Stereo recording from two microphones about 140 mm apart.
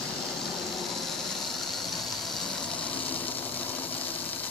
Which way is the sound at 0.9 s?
Centre (ahead or behind).